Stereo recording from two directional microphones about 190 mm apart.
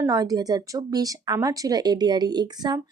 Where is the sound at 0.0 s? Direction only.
20° right (ahead or behind).